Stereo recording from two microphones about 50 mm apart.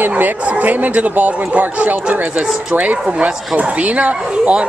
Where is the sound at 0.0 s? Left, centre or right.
Right.